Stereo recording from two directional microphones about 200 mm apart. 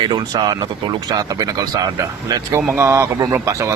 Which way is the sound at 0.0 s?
20° right (ahead or behind).